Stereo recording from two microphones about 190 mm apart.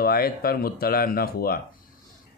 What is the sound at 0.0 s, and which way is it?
Speech, 55° left (ahead or behind).